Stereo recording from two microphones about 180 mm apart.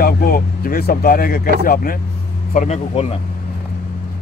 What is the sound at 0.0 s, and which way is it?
Speech, 55° left (ahead or behind).